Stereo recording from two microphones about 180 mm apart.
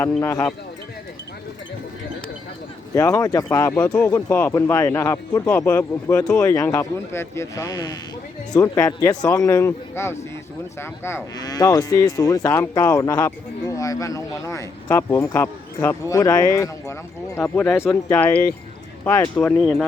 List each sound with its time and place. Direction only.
0.2 s speech: 15° left (ahead or behind)
2.9 s speech: 20° left (ahead or behind)
6.3 s speech: 20° left (ahead or behind)